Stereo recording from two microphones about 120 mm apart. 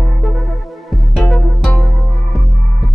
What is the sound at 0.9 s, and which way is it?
Music, 5° left (ahead or behind).